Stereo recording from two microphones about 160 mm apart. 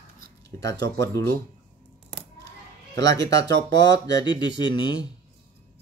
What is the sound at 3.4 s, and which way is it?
Speech, 90° right.